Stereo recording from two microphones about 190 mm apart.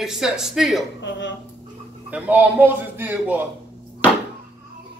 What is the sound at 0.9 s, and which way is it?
Speech, 70° left (ahead or behind).